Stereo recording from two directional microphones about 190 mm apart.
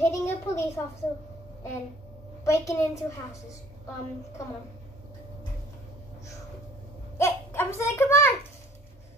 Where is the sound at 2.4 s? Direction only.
15° left (ahead or behind).